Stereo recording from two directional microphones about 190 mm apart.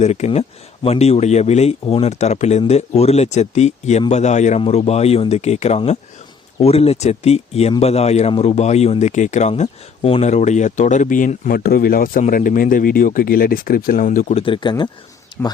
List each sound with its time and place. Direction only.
0.0 s speech: 35° left (ahead or behind)